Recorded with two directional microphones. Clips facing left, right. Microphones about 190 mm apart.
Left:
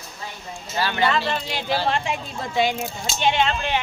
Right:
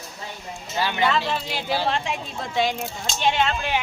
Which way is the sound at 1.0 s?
Centre (ahead or behind).